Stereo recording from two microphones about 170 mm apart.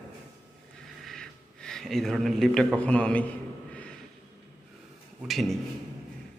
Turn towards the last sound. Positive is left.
turn(degrees=0)  # may be behind; listen again after turning